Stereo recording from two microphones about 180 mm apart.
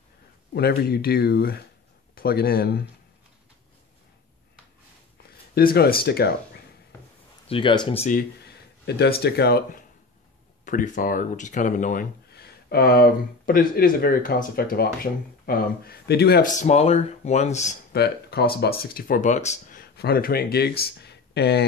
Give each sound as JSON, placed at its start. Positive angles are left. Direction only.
{"t": 0.6, "sound": "speech", "side_deg": 60}
{"t": 5.5, "sound": "speech", "side_deg": 55}
{"t": 7.4, "sound": "speech", "side_deg": 25}
{"t": 8.8, "sound": "speech", "side_deg": 65}
{"t": 10.6, "sound": "speech", "side_deg": 45}
{"t": 12.3, "sound": "speech", "side_deg": 65}
{"t": 16.4, "sound": "speech", "side_deg": 40}
{"t": 17.9, "sound": "speech", "side_deg": 65}